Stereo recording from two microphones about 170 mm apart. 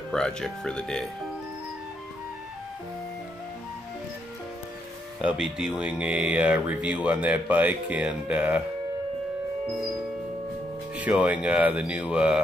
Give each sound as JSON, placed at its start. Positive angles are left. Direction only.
{"t": 0.1, "sound": "speech", "side_deg": 5}
{"t": 5.2, "sound": "speech", "side_deg": -5}
{"t": 11.0, "sound": "speech", "side_deg": -10}